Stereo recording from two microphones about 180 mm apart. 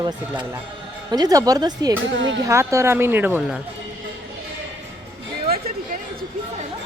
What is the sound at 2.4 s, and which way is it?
Speech, 15° right (ahead or behind).